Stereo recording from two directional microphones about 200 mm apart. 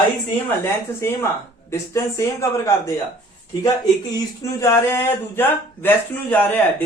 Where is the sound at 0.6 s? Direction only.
15° left (ahead or behind).